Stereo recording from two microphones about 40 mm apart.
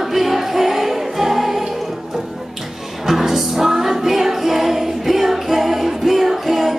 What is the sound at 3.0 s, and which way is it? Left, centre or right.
Music, centre.